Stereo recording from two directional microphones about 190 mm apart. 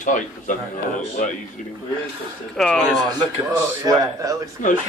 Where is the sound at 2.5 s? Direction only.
Centre (ahead or behind).